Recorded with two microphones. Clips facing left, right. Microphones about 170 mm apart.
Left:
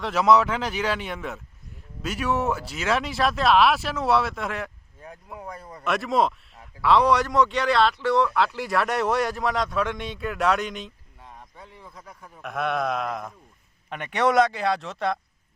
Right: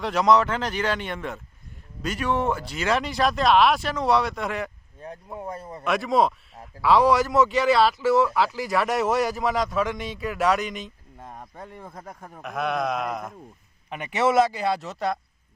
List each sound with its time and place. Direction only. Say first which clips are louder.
0.0 s a man's voice: even; 5° left (ahead or behind)
4.9 s speech: right 4 dB; 20° right (ahead or behind)
5.8 s a man's voice: right 1 dB; centre (ahead or behind)
11.2 s speech: right 6 dB; 45° right (ahead or behind)
12.4 s a man's voice: even; centre (ahead or behind)